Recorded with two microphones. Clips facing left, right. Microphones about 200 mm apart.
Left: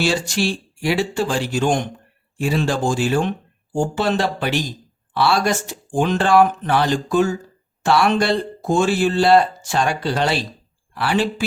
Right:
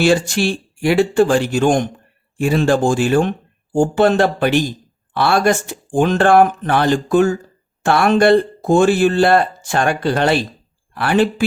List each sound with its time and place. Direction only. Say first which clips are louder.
0.0 s speech: right 5 dB; 55° right (ahead or behind)